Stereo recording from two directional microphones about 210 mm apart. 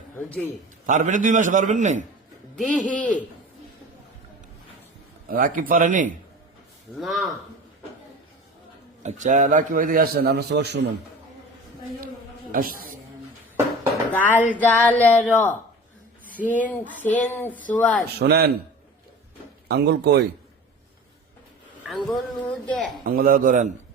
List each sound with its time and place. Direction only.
0.2 s speech: 10° left (ahead or behind)
0.9 s a man's voice: 35° right (ahead or behind)
2.6 s speech: 35° left (ahead or behind)
3.0 s speech: 5° left (ahead or behind)
5.3 s a man's voice: 40° right (ahead or behind)
7.0 s speech: centre (ahead or behind)
9.0 s a man's voice: 35° right (ahead or behind); by 10.8 s 50° right (ahead or behind)
12.5 s speech: 40° right (ahead or behind)
14.1 s speech: 10° left (ahead or behind)
17.0 s speech: 10° left (ahead or behind)
18.2 s speech: 50° right (ahead or behind)
19.6 s speech: 50° right (ahead or behind)
22.0 s speech: 5° left (ahead or behind)
23.0 s a man's voice: 40° right (ahead or behind)